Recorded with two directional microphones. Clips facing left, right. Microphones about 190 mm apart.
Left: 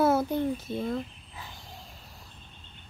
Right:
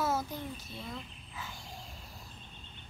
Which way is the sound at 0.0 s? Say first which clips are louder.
Left 10 dB; 60° left (ahead or behind).